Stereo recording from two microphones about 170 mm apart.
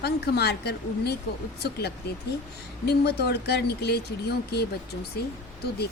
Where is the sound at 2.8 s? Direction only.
75° left (ahead or behind).